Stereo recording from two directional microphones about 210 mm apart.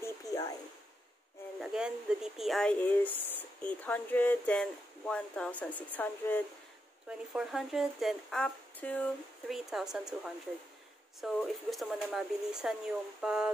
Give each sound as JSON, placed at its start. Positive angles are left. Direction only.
{"t": 0.0, "sound": "a sound", "side_deg": 15}
{"t": 1.6, "sound": "speech", "side_deg": -5}
{"t": 7.1, "sound": "speech", "side_deg": -5}